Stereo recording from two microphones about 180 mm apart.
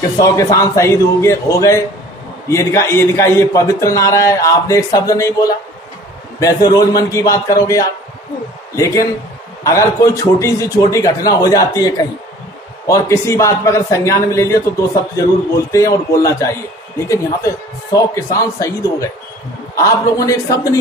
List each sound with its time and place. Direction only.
0.2 s a man's voice: 20° left (ahead or behind)
17.9 s a man's voice: 20° left (ahead or behind)